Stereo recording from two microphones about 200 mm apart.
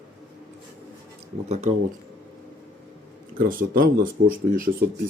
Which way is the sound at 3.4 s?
45° right (ahead or behind).